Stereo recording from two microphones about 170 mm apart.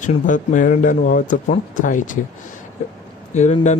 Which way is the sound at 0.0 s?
50° left (ahead or behind).